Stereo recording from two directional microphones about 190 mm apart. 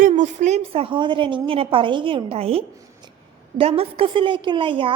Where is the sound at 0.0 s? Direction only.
40° right (ahead or behind).